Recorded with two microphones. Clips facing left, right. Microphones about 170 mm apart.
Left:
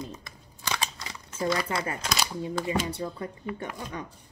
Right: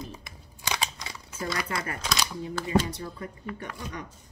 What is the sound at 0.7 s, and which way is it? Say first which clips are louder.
Scissors: even; 10° right (ahead or behind).